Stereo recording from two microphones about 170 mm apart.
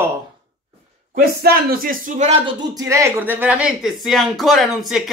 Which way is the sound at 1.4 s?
65° right (ahead or behind).